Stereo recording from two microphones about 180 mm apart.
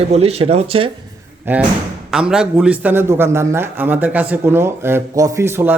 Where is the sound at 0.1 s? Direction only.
35° right (ahead or behind).